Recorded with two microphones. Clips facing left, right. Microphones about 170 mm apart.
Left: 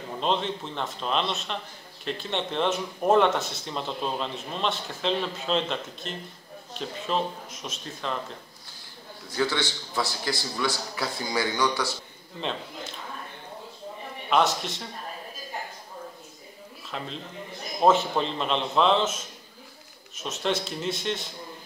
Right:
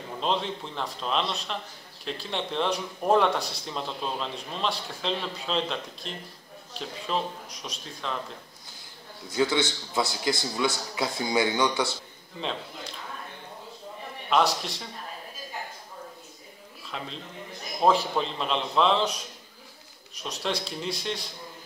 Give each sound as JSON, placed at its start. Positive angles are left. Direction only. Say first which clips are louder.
{"t": 0.2, "sound": "speech", "louder": "left 1 dB", "side_deg": 0}
{"t": 9.3, "sound": "a man's voice", "louder": "right 2 dB", "side_deg": -20}
{"t": 12.4, "sound": "speech", "louder": "left 1 dB", "side_deg": 0}
{"t": 14.3, "sound": "speech", "louder": "left 1 dB", "side_deg": 0}
{"t": 16.9, "sound": "speech", "louder": "left 2 dB", "side_deg": 0}